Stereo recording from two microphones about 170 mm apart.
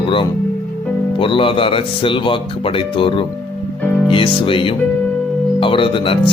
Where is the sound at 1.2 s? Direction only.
30° left (ahead or behind).